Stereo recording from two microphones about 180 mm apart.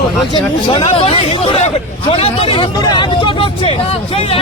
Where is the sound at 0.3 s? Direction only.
25° left (ahead or behind).